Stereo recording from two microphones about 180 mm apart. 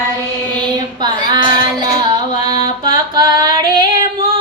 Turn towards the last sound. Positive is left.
turn(degrees=-20)  # may be behind; listen again after turning